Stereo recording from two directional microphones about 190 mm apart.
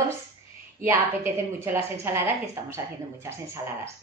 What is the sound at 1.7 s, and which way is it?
Speech, 10° right (ahead or behind).